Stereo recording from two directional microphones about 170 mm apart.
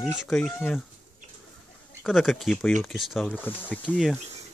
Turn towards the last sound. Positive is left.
turn(degrees=0)  # may be behind; listen again after turning